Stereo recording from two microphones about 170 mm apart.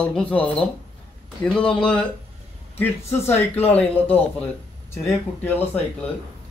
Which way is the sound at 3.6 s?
10° left (ahead or behind).